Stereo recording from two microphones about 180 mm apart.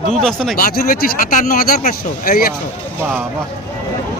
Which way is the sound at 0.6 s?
55° left (ahead or behind).